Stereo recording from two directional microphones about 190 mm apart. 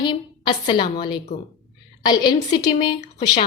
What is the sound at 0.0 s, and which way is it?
A woman's voice, 25° left (ahead or behind).